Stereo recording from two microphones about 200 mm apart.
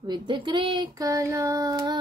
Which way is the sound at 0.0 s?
20° right (ahead or behind).